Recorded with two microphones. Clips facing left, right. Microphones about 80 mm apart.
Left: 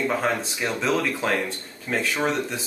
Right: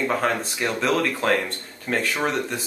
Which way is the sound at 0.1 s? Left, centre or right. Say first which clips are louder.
Right 1 dB; centre.